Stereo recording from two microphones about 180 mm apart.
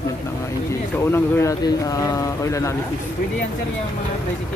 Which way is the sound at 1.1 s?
15° left (ahead or behind).